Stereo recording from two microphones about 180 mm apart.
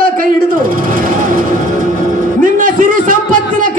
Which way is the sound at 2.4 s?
50° right (ahead or behind).